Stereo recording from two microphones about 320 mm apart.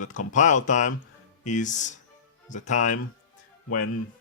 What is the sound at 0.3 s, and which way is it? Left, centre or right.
Speech, left.